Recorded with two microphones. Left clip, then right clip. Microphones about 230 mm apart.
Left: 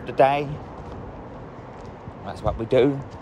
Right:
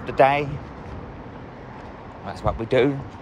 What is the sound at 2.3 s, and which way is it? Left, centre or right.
Speech, centre.